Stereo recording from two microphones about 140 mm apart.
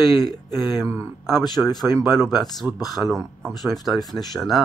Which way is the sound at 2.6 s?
15° right (ahead or behind).